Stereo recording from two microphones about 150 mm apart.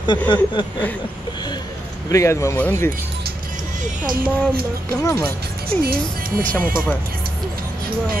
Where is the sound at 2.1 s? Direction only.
20° left (ahead or behind).